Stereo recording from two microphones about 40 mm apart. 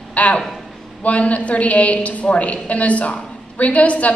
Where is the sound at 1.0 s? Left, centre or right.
Left.